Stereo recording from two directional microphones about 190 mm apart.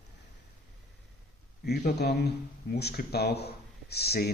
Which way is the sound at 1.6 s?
55° left (ahead or behind).